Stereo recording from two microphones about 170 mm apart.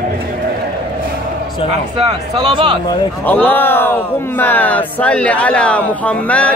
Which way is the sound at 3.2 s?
10° left (ahead or behind).